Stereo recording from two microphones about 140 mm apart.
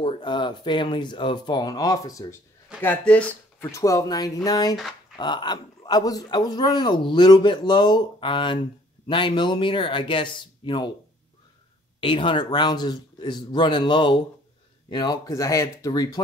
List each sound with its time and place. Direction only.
0.0 s a man's voice: 35° left (ahead or behind)
2.8 s a man's voice: 10° left (ahead or behind); by 10.9 s 35° left (ahead or behind)
12.0 s a man's voice: 40° left (ahead or behind)